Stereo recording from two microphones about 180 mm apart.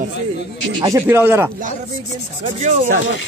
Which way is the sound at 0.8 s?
15° right (ahead or behind).